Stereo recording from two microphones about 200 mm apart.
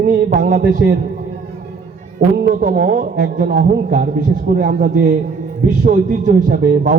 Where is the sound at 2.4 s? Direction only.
45° right (ahead or behind).